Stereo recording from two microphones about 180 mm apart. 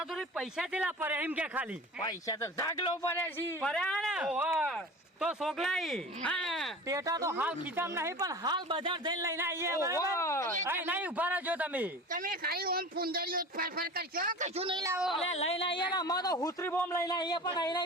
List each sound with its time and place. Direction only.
0.3 s speech: 5° right (ahead or behind)
2.0 s speech: 20° left (ahead or behind); by 6.7 s centre (ahead or behind)
6.8 s speech: 20° right (ahead or behind)
10.2 s speech: 15° left (ahead or behind)
10.6 s speech: 10° right (ahead or behind)
12.1 s speech: 50° right (ahead or behind)
14.6 s speech: 25° right (ahead or behind)
14.8 s speech: 5° right (ahead or behind)
15.3 s speech: 35° left (ahead or behind)